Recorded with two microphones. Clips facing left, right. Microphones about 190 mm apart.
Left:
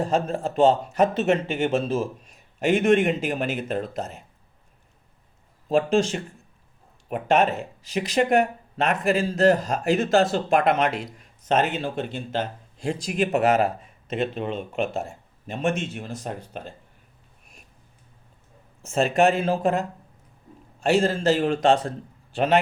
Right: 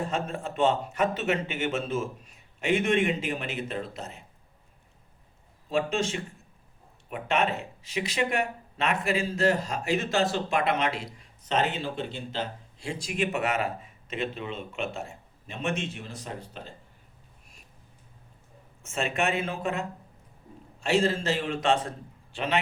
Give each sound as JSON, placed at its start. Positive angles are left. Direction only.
{"t": 0.0, "sound": "a man's voice", "side_deg": 35}
{"t": 2.6, "sound": "speech", "side_deg": 45}
{"t": 5.6, "sound": "speech", "side_deg": 45}
{"t": 18.8, "sound": "a man's voice", "side_deg": 40}
{"t": 21.0, "sound": "speech", "side_deg": 45}